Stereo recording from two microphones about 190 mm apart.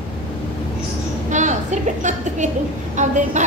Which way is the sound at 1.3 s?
40° right (ahead or behind).